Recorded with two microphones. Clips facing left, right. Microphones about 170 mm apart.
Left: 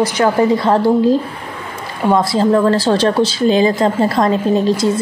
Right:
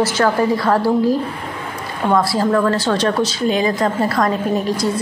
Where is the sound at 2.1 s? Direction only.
20° left (ahead or behind).